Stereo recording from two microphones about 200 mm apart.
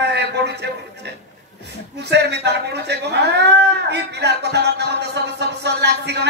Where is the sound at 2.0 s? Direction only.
60° right (ahead or behind).